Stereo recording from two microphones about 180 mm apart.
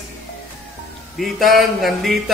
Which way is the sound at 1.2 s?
Centre (ahead or behind).